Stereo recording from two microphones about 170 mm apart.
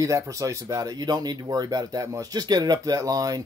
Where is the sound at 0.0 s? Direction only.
20° right (ahead or behind).